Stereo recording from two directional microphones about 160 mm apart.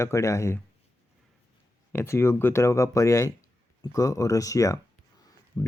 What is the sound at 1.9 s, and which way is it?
Speech, 15° left (ahead or behind).